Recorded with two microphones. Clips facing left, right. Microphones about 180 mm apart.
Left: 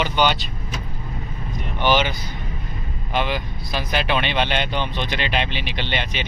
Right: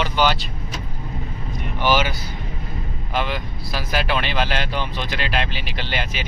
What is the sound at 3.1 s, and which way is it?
Speech, centre (ahead or behind).